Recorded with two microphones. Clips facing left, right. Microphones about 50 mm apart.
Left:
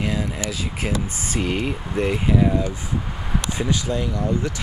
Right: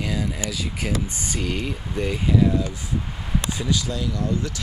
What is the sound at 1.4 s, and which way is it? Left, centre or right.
Speech, left.